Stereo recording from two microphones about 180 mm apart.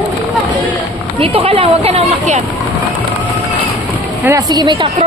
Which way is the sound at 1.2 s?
30° right (ahead or behind).